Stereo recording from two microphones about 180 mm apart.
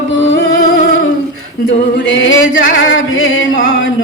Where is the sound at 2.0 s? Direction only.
90° left.